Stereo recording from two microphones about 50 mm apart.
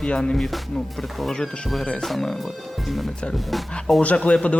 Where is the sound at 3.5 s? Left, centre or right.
Centre.